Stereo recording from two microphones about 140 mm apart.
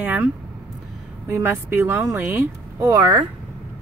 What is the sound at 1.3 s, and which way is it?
Speech, 15° right (ahead or behind).